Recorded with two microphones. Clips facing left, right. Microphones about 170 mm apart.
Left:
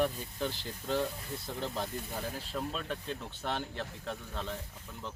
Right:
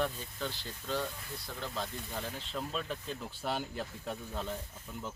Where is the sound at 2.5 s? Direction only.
Centre (ahead or behind).